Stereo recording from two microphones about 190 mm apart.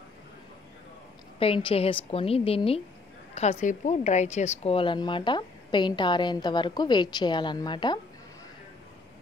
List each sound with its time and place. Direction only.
1.4 s a woman's voice: 30° left (ahead or behind)